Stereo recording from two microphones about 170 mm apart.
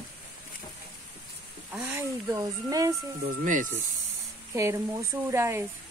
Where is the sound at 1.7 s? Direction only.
10° right (ahead or behind).